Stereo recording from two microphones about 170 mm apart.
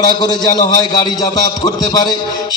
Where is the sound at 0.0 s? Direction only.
25° left (ahead or behind).